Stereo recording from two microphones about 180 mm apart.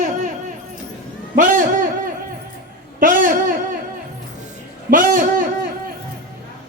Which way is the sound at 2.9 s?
50° right (ahead or behind).